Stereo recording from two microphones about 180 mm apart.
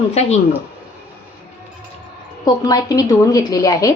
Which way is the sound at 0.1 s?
35° left (ahead or behind).